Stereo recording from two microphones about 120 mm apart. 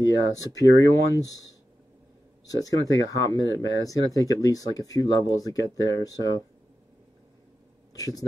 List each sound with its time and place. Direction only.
0.0 s speech: 30° left (ahead or behind)
2.4 s speech: 30° left (ahead or behind)
7.9 s speech: 30° left (ahead or behind)